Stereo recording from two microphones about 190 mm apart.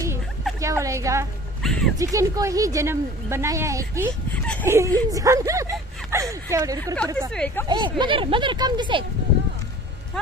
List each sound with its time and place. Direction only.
0.6 s speech: 15° right (ahead or behind)
1.6 s a sound: centre (ahead or behind)
2.0 s speech: 15° right (ahead or behind)
6.1 s a sound: 15° right (ahead or behind)
7.3 s speech: 5° left (ahead or behind)
7.6 s speech: 25° right (ahead or behind)